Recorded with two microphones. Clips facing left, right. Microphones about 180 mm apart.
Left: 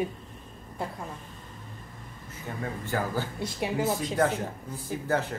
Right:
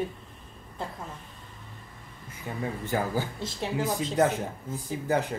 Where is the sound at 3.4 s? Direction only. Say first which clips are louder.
Left 1 dB; 10° left (ahead or behind).